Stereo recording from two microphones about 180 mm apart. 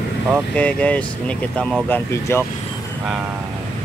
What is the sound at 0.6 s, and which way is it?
Speech, 5° left (ahead or behind).